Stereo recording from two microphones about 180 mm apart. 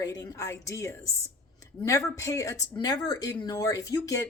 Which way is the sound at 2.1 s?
20° left (ahead or behind).